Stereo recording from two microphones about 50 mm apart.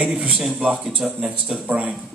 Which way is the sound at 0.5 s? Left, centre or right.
Right.